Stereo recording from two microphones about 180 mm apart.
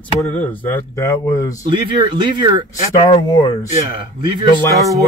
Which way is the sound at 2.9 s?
25° left (ahead or behind).